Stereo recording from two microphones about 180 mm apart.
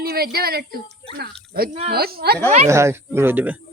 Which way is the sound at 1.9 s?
60° right (ahead or behind).